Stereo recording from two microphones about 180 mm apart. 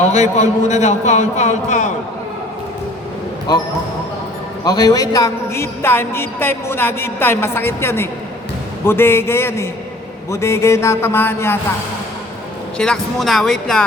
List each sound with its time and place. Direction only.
0.0 s a man's voice: 40° left (ahead or behind)
3.5 s a woman's voice: 20° left (ahead or behind)
12.7 s speech: 5° left (ahead or behind)